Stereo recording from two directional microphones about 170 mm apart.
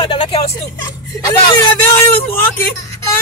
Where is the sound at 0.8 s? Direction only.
20° left (ahead or behind).